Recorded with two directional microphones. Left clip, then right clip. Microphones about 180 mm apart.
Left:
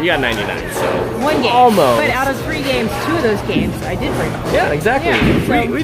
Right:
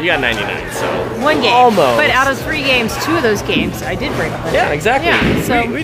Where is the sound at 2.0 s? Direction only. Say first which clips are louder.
Right 3 dB; 30° right (ahead or behind).